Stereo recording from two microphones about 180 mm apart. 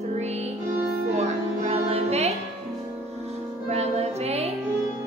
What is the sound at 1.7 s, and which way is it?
Music, 35° right (ahead or behind).